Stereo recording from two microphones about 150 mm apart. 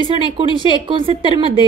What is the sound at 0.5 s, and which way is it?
A woman's voice, 35° right (ahead or behind).